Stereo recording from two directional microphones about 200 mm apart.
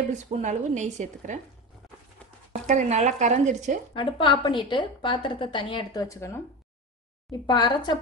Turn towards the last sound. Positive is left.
turn(degrees=20)  # may be behind; listen again after turning